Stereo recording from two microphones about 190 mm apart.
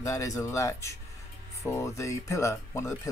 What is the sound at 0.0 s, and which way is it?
Speech, 15° left (ahead or behind).